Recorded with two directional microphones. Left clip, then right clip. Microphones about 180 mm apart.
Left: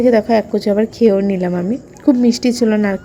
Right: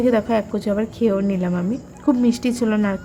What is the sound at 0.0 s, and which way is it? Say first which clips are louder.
Speech: left 6 dB; 15° left (ahead or behind).